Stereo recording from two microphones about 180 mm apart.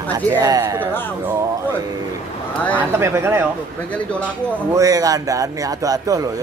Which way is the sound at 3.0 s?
15° right (ahead or behind).